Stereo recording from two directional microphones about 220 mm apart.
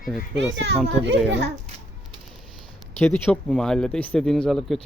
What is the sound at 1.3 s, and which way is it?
Speech, 50° right (ahead or behind).